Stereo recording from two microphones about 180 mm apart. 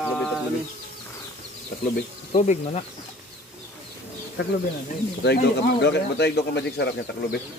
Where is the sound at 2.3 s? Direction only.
35° left (ahead or behind).